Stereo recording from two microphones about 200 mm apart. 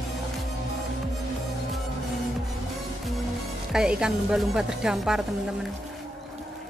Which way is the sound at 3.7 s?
5° right (ahead or behind).